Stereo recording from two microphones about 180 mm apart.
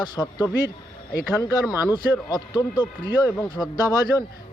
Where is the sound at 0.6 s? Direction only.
60° left (ahead or behind).